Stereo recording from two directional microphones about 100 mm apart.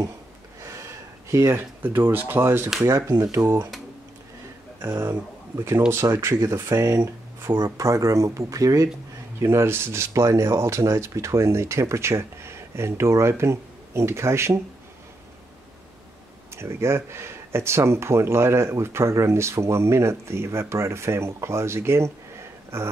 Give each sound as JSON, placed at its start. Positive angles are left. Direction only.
{"t": 0.6, "sound": "speech", "side_deg": -30}
{"t": 4.8, "sound": "speech", "side_deg": -30}
{"t": 16.5, "sound": "speech", "side_deg": -25}